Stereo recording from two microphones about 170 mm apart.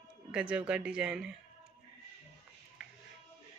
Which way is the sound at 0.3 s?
5° right (ahead or behind).